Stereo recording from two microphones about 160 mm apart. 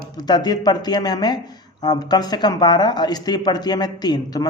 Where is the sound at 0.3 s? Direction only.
25° left (ahead or behind).